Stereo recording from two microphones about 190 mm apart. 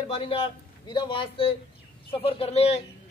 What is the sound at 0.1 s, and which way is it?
A man's voice, 30° left (ahead or behind).